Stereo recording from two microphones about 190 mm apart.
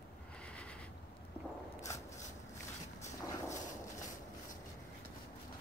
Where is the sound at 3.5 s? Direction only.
40° left (ahead or behind).